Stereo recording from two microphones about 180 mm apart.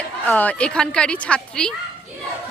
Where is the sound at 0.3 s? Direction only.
10° left (ahead or behind).